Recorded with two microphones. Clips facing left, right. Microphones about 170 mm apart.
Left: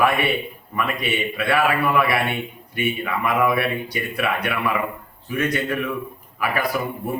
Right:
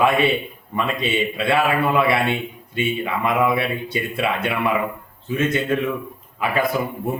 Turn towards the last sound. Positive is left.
turn(degrees=-25)  # may be behind; listen again after turning